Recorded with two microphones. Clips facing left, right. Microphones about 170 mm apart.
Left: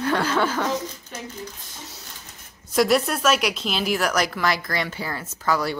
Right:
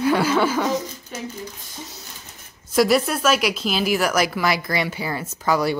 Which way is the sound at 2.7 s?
Centre (ahead or behind).